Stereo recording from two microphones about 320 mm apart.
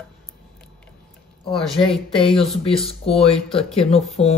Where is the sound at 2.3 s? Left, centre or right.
Centre.